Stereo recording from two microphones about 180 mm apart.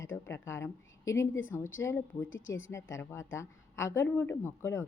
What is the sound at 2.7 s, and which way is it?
A woman's voice, 15° left (ahead or behind).